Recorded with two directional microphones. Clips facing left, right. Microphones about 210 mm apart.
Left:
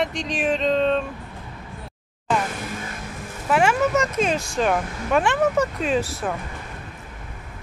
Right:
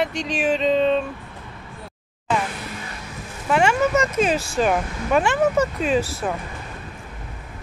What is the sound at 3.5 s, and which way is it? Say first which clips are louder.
Speech: right 1 dB; centre (ahead or behind).